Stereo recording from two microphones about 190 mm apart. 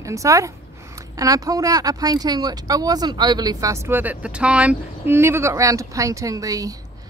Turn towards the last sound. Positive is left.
turn(degrees=-20)  # may be behind; listen again after turning